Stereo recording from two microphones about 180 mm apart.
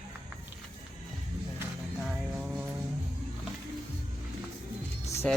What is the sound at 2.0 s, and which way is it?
Music, 5° right (ahead or behind).